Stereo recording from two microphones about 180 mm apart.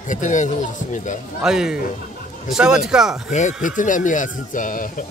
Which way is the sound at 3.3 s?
40° left (ahead or behind).